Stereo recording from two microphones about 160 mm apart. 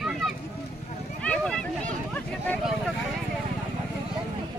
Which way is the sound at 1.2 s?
5° left (ahead or behind).